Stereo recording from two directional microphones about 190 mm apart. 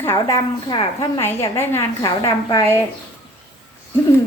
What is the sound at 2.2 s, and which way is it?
Speech, 25° left (ahead or behind).